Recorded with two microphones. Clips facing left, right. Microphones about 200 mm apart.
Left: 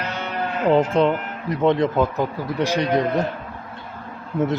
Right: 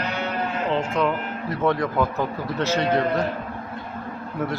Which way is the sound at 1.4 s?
20° left (ahead or behind).